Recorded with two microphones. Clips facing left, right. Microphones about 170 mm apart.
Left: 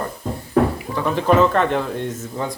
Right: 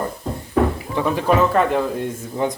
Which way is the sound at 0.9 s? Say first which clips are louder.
Left 1 dB; 10° right (ahead or behind).